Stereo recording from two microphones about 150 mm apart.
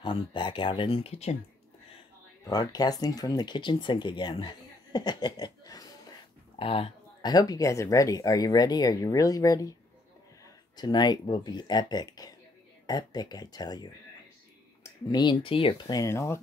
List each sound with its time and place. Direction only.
0.0 s speech: 30° left (ahead or behind)
0.8 s speech: 45° left (ahead or behind)
2.4 s speech: 25° left (ahead or behind)
6.6 s speech: 35° left (ahead or behind)
16.0 s speech: 20° left (ahead or behind)